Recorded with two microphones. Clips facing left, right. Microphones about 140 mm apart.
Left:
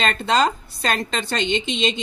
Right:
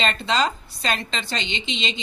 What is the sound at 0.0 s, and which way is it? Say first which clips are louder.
A woman's voice: left 3 dB; 50° left (ahead or behind).